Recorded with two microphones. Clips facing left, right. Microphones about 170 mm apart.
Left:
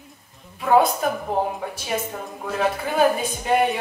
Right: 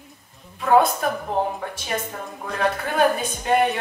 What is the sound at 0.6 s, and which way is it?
A woman's voice, 5° left (ahead or behind).